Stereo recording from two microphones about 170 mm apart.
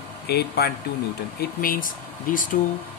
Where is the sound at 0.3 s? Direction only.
70° left (ahead or behind).